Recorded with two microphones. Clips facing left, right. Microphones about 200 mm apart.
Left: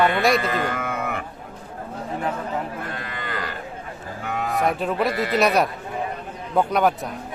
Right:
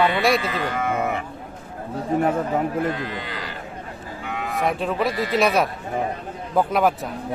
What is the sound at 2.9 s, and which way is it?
Livestock, 50° left (ahead or behind).